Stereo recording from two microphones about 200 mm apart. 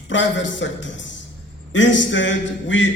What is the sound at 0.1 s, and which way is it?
A man's voice, 65° left (ahead or behind).